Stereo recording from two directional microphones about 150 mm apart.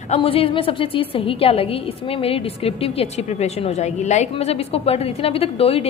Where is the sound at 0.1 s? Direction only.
40° left (ahead or behind).